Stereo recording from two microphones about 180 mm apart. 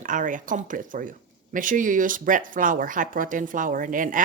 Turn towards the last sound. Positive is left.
turn(degrees=-50)  # may be behind; listen again after turning